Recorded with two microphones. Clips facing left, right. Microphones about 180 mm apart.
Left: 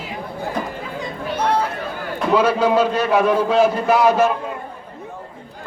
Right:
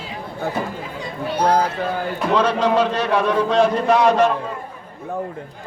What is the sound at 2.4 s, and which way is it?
A man's voice, 10° left (ahead or behind).